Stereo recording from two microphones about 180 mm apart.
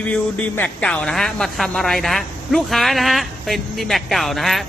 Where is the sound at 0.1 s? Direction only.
10° left (ahead or behind).